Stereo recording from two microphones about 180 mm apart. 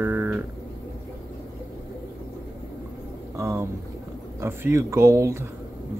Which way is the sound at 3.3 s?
15° right (ahead or behind).